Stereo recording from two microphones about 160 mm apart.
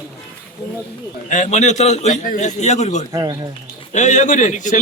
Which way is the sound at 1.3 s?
50° left (ahead or behind).